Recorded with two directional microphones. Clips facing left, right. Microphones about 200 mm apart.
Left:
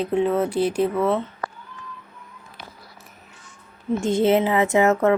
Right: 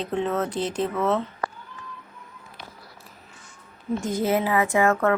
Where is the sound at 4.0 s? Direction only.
25° left (ahead or behind).